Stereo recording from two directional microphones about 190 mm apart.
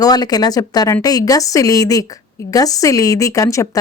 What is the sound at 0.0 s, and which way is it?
A woman's voice, 20° left (ahead or behind).